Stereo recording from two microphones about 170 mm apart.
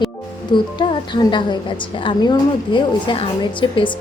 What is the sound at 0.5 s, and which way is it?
A woman's voice, 30° left (ahead or behind).